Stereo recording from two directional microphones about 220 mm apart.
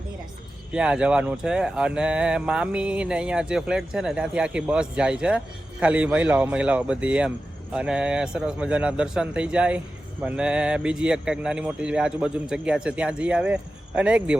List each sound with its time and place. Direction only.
0.7 s speech: 5° right (ahead or behind)